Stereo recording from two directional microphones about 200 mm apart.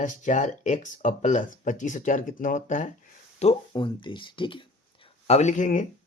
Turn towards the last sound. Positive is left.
turn(degrees=40)  # may be behind; listen again after turning